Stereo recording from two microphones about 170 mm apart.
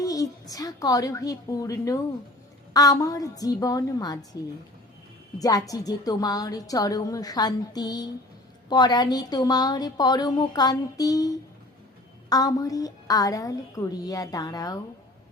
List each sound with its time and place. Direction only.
0.0 s a sound: 20° left (ahead or behind)
0.5 s a woman's voice: 20° left (ahead or behind)
5.4 s a woman's voice: 20° left (ahead or behind)